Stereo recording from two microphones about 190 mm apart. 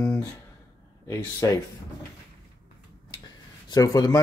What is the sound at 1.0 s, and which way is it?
Speech, 15° left (ahead or behind).